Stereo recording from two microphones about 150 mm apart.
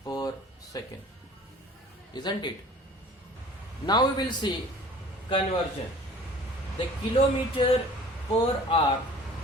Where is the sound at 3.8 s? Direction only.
30° left (ahead or behind).